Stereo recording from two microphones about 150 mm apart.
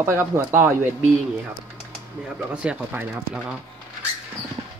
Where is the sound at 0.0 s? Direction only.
15° right (ahead or behind).